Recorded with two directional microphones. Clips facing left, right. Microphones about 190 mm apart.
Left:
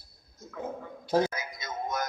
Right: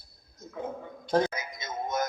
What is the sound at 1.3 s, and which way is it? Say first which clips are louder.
Music: right 1 dB; 20° right (ahead or behind).